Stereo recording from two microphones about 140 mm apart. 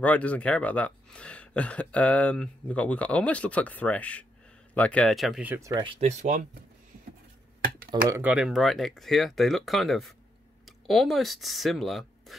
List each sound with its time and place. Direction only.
0.0 s speech: 10° left (ahead or behind)
5.4 s speech: 15° right (ahead or behind)
5.7 s speech: 30° right (ahead or behind)
5.9 s speech: 55° right (ahead or behind)
8.1 s speech: 10° right (ahead or behind)